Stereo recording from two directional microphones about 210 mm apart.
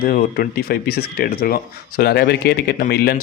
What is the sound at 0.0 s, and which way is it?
Speech, 45° left (ahead or behind).